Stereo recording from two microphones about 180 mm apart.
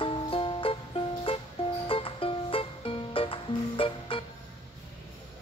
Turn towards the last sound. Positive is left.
turn(degrees=30)  # may be behind; listen again after turning